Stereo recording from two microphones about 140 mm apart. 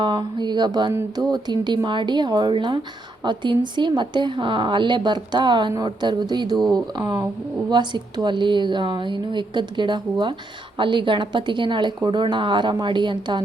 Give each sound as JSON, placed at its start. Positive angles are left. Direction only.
{"t": 0.0, "sound": "a woman's voice", "side_deg": -35}